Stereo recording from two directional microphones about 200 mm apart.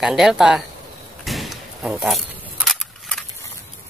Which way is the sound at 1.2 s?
Centre (ahead or behind).